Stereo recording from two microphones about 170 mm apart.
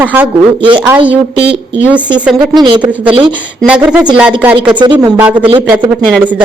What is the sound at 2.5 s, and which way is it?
Speech, 25° right (ahead or behind).